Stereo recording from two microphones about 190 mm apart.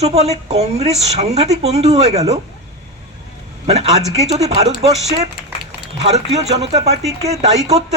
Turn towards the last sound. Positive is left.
turn(degrees=-35)  # may be behind; listen again after turning